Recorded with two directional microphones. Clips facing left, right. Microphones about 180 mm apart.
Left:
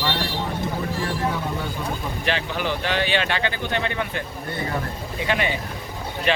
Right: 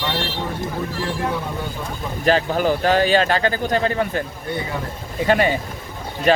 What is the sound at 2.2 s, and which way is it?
A man's voice, 40° right (ahead or behind).